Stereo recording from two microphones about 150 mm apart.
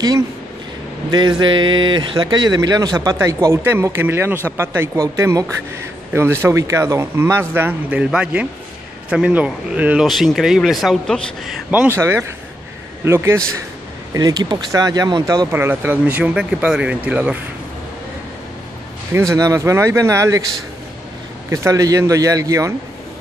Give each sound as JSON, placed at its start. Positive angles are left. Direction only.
{"t": 1.4, "sound": "speech", "side_deg": -30}
{"t": 6.4, "sound": "a man's voice", "side_deg": -20}
{"t": 11.9, "sound": "speech", "side_deg": -15}
{"t": 19.1, "sound": "speech", "side_deg": -20}
{"t": 21.5, "sound": "speech", "side_deg": -20}